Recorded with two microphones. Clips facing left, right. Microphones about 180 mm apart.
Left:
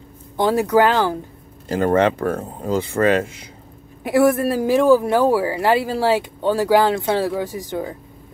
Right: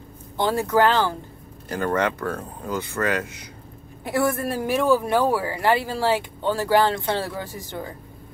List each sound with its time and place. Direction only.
0.4 s speech: 20° left (ahead or behind)